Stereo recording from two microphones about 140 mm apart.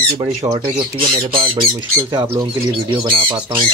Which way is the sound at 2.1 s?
25° right (ahead or behind).